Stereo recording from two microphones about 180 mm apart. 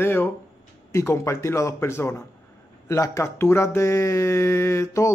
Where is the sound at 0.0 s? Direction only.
10° left (ahead or behind).